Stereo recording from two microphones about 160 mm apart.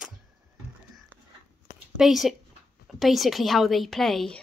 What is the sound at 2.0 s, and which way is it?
A woman's voice, centre (ahead or behind).